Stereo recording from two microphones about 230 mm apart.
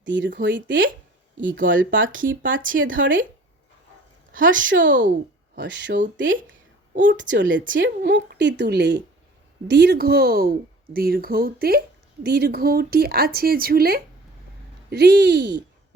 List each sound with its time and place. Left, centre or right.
0.0 s a woman's voice: right
2.1 s speech: right
4.3 s speech: right
4.7 s a woman's voice: right